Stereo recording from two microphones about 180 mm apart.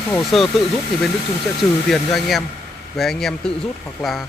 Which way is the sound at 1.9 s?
Centre (ahead or behind).